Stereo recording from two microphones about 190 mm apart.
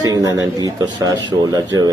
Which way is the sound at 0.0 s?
20° right (ahead or behind).